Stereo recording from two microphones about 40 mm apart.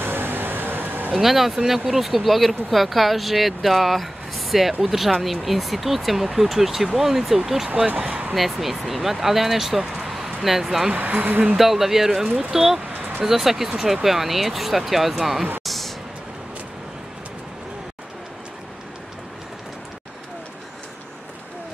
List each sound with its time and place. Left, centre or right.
0.0 s vehicle: right
1.1 s speech: centre
8.1 s speech: right
8.4 s speech: centre
11.1 s speech: right
11.5 s speech: centre
15.6 s a sound: centre